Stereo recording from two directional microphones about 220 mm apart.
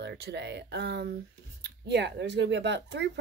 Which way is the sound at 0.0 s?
50° right (ahead or behind).